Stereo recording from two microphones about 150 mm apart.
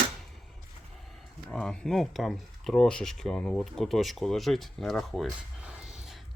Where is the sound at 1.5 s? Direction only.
5° left (ahead or behind).